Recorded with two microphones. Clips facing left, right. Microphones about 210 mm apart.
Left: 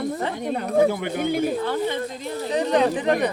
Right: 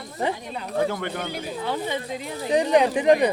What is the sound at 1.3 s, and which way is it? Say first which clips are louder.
Speech: left 10 dB; 55° left (ahead or behind).